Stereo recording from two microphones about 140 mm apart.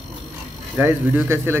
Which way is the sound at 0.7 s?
15° right (ahead or behind).